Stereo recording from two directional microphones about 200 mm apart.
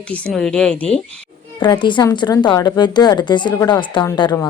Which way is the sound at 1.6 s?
25° left (ahead or behind).